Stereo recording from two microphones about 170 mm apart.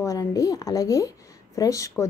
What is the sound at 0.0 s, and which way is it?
A woman's voice, 20° left (ahead or behind).